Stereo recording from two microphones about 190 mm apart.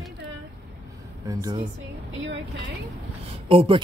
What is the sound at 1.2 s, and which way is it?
Speech, 20° right (ahead or behind).